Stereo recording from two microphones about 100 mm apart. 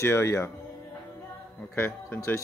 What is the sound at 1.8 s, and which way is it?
Speech, 25° left (ahead or behind).